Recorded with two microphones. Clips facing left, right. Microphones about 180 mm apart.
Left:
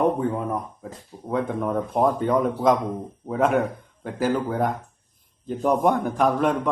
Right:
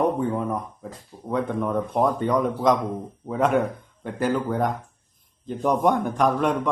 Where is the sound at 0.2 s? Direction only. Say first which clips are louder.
Even; centre (ahead or behind).